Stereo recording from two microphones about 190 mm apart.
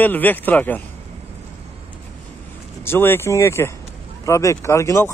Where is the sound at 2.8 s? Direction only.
10° left (ahead or behind).